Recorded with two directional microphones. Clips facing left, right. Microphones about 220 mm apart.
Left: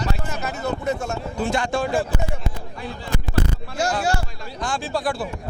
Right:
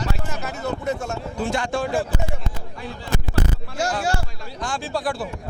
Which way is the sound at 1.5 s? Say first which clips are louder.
Left 1 dB; 20° left (ahead or behind).